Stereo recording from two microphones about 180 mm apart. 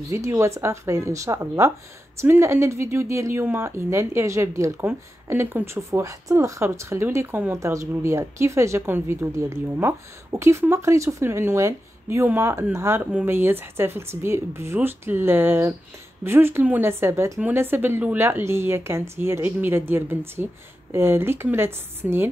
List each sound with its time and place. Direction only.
0.1 s speech: 15° right (ahead or behind)